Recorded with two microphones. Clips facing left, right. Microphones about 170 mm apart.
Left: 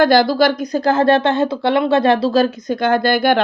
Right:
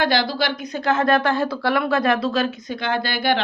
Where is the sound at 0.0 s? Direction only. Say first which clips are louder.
Left 8 dB; 45° left (ahead or behind).